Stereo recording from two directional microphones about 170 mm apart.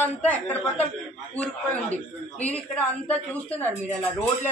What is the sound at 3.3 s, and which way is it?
Speech, 10° left (ahead or behind).